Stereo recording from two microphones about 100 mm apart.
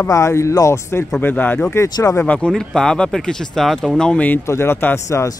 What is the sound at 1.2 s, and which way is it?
Speech, 20° left (ahead or behind).